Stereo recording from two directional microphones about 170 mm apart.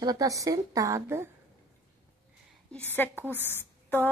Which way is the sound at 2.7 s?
10° left (ahead or behind).